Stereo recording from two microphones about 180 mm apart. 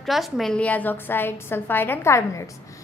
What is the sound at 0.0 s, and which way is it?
A woman's voice, centre (ahead or behind).